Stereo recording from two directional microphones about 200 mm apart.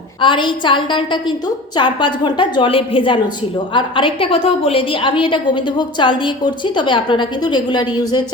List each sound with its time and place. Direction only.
0.2 s a woman's voice: 25° left (ahead or behind)